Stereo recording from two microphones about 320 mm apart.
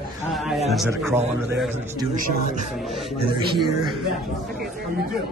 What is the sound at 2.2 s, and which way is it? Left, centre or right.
Speech, right.